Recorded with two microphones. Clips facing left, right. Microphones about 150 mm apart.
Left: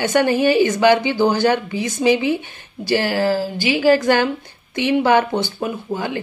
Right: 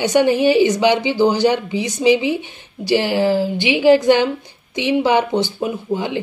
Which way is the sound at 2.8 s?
15° right (ahead or behind).